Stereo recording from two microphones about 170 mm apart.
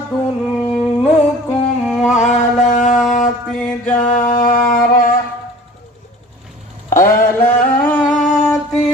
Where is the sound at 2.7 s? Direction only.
45° left (ahead or behind).